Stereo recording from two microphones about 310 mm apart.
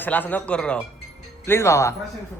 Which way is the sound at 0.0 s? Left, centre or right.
Centre.